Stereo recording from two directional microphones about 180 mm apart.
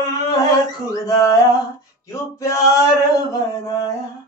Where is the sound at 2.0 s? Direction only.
15° left (ahead or behind).